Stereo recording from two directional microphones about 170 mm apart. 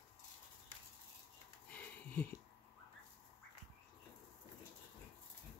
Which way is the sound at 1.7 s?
10° left (ahead or behind).